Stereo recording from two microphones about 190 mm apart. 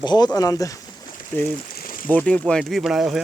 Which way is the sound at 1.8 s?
45° left (ahead or behind).